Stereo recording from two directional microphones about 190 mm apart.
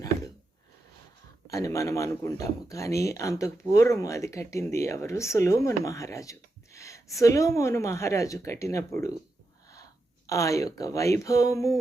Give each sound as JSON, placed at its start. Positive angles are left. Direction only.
{"t": 1.5, "sound": "speech", "side_deg": 15}
{"t": 10.2, "sound": "speech", "side_deg": 15}